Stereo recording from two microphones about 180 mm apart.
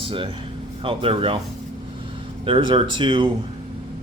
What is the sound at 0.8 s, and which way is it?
Speech, 30° right (ahead or behind).